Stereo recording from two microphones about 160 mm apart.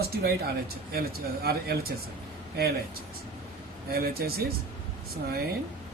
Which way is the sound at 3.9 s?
75° right (ahead or behind).